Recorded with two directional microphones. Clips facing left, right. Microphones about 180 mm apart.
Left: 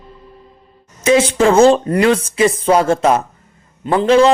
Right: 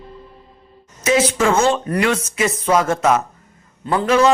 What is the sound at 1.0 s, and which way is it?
A woman's voice, 30° left (ahead or behind).